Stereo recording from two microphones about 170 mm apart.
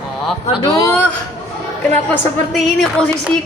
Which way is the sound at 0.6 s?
20° left (ahead or behind).